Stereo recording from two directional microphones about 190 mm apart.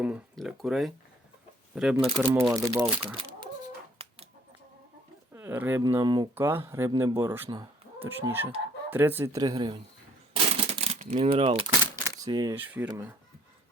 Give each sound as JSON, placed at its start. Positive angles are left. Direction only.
{"t": 0.0, "sound": "speech", "side_deg": -5}
{"t": 2.0, "sound": "speech", "side_deg": -30}
{"t": 2.4, "sound": "speech", "side_deg": -15}
{"t": 4.0, "sound": "chicken", "side_deg": -30}
{"t": 5.3, "sound": "speech", "side_deg": -10}
{"t": 10.3, "sound": "a sound", "side_deg": -30}
{"t": 12.0, "sound": "coin", "side_deg": -20}
{"t": 12.5, "sound": "speech", "side_deg": -10}